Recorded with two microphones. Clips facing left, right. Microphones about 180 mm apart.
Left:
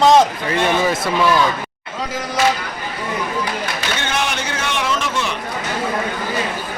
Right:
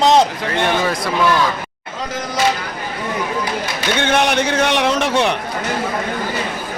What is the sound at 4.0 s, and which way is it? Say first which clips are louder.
A man's voice: right 10 dB; 60° right (ahead or behind).